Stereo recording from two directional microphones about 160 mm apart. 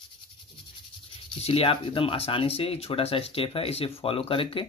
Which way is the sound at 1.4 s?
35° left (ahead or behind).